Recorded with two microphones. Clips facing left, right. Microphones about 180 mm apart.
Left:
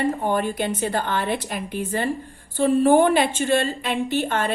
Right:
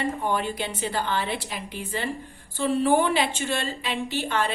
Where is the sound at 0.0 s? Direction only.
45° left (ahead or behind).